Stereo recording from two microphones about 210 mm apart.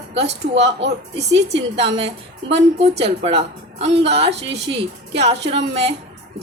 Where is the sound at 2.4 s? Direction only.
30° right (ahead or behind).